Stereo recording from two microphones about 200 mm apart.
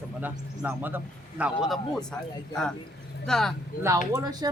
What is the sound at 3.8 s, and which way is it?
Speech, 15° right (ahead or behind).